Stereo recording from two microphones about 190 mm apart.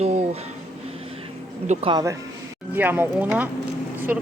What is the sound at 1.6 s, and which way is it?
Speech, 30° right (ahead or behind).